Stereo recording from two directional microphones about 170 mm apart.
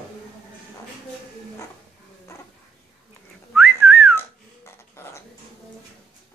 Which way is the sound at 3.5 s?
Centre (ahead or behind).